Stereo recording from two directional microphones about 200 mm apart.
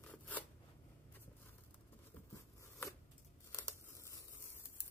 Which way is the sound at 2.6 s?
15° left (ahead or behind).